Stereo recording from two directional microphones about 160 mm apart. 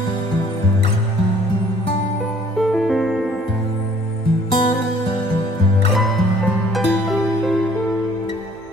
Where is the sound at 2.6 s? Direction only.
Centre (ahead or behind).